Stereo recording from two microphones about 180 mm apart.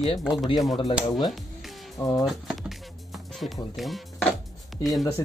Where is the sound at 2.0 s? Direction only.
20° left (ahead or behind).